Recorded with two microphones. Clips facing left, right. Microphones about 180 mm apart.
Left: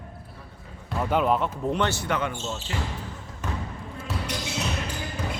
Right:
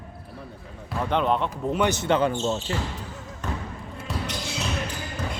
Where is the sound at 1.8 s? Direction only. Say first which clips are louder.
Right 7 dB; 20° right (ahead or behind); by 2.7 s 35° right (ahead or behind).